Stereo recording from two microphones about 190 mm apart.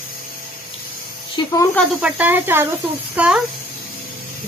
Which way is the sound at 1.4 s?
25° left (ahead or behind).